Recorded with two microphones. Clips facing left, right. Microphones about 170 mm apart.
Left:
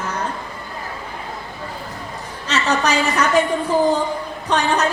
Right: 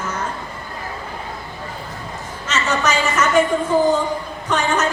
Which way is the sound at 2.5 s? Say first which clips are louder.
Left 1 dB; 35° left (ahead or behind).